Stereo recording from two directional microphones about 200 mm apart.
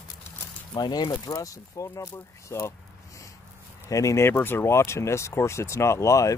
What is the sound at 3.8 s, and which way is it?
Speech, 15° left (ahead or behind).